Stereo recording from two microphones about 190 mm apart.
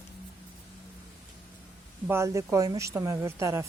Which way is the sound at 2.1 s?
15° right (ahead or behind).